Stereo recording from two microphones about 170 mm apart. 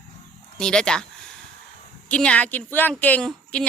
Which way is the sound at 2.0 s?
5° left (ahead or behind).